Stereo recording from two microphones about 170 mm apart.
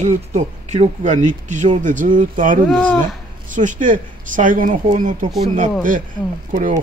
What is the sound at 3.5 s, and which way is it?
Speech, 50° right (ahead or behind).